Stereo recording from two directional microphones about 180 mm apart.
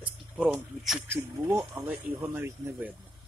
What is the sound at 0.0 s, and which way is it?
Speech, 5° right (ahead or behind).